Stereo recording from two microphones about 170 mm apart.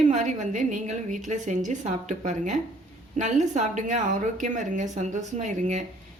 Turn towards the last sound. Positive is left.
turn(degrees=-45)  # may be behind; listen again after turning